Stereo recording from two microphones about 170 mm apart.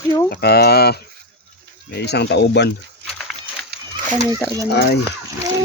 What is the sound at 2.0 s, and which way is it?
Speech, 80° left.